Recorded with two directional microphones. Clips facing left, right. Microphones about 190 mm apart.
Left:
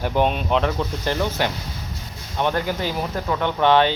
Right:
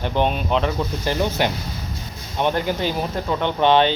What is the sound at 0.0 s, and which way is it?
Speech, 5° left (ahead or behind).